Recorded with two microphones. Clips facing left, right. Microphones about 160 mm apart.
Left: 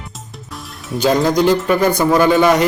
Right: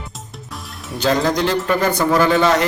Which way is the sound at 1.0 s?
10° left (ahead or behind).